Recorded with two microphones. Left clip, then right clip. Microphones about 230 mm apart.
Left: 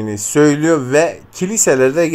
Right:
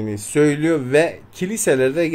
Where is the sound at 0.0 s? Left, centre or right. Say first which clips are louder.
Left 5 dB; centre.